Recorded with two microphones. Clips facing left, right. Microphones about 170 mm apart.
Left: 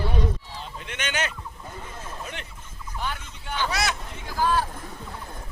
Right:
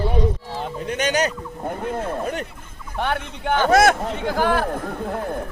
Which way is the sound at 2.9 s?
65° right (ahead or behind).